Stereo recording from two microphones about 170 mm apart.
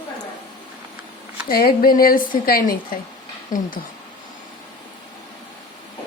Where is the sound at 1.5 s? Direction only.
60° left (ahead or behind).